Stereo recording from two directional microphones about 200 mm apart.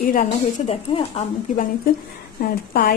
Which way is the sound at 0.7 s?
30° left (ahead or behind).